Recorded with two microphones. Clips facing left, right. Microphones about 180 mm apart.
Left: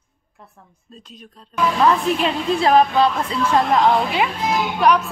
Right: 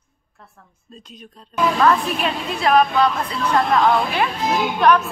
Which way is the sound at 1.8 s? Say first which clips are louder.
Left 3 dB; 25° left (ahead or behind).